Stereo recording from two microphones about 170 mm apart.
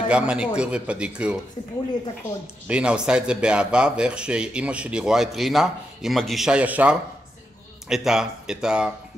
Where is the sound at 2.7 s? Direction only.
5° right (ahead or behind).